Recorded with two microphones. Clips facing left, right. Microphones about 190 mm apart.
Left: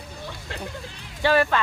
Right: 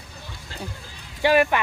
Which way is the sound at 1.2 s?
15° right (ahead or behind).